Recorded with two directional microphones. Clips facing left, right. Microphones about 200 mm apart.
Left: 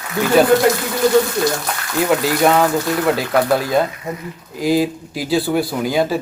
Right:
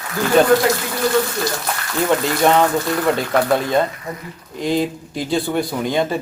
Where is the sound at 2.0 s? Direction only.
5° left (ahead or behind).